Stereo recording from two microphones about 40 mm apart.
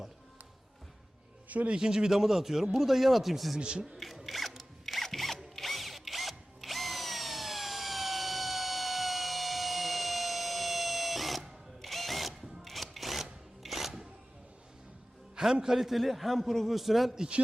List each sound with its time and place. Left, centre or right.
1.5 s speech: right
1.7 s a man's voice: centre
3.6 s a man's voice: right
3.9 s a sound: centre
5.0 s zipper: centre
5.5 s drill: centre
13.6 s music: centre
15.6 s a man's voice: centre